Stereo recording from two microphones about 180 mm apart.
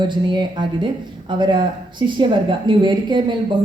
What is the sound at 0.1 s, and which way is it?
A woman's voice, 25° right (ahead or behind).